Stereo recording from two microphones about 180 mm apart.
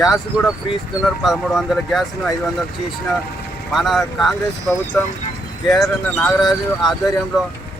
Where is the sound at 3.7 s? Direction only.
Centre (ahead or behind).